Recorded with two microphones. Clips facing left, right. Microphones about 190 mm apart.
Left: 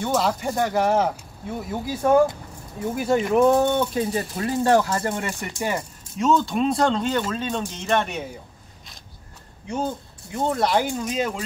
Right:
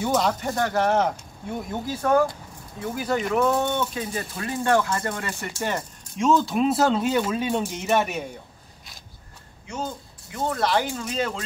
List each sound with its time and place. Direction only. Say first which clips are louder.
0.0 s speech: even; centre (ahead or behind)
2.0 s speech: left 3 dB; 20° left (ahead or behind)
5.2 s speech: left 2 dB; 10° left (ahead or behind)
10.3 s speech: left 2 dB; 20° left (ahead or behind)